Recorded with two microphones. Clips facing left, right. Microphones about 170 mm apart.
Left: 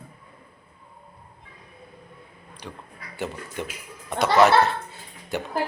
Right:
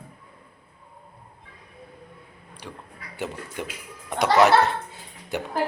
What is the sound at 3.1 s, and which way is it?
Speech, 15° right (ahead or behind).